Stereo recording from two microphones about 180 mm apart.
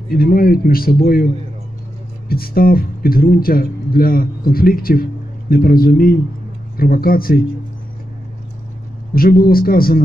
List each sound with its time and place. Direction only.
0.1 s speech: 55° left (ahead or behind)
9.1 s speech: 55° left (ahead or behind)